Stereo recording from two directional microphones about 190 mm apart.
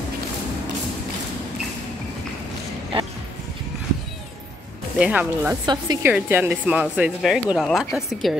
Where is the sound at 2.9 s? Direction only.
30° right (ahead or behind).